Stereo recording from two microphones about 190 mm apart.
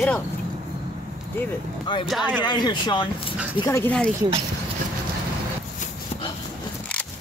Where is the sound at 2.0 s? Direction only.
5° right (ahead or behind).